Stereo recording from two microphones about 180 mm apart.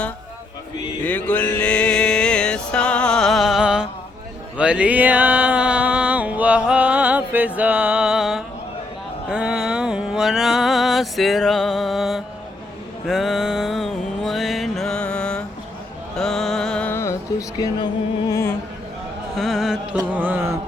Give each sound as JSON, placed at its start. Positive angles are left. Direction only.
{"t": 1.0, "sound": "mantra", "side_deg": 10}
{"t": 4.5, "sound": "music", "side_deg": -5}
{"t": 13.1, "sound": "mantra", "side_deg": 0}
{"t": 16.1, "sound": "music", "side_deg": 0}
{"t": 19.4, "sound": "music", "side_deg": 0}
{"t": 20.0, "sound": "mantra", "side_deg": -10}